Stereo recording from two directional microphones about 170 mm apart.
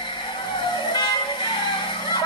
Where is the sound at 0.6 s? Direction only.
25° left (ahead or behind).